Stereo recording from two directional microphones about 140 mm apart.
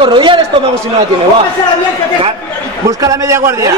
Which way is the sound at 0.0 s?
35° right (ahead or behind).